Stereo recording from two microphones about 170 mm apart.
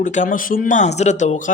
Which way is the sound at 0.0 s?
45° left (ahead or behind).